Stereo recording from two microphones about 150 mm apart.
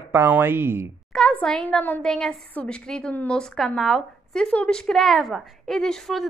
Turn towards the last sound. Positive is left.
turn(degrees=0)  # may be behind; listen again after turning